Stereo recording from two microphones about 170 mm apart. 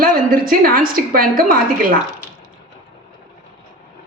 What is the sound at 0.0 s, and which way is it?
A woman's voice, 55° right (ahead or behind).